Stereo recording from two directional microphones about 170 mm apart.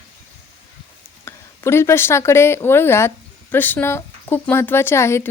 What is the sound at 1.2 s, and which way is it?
Speech, 15° left (ahead or behind).